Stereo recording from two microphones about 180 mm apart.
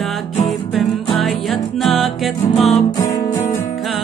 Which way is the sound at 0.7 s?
Centre (ahead or behind).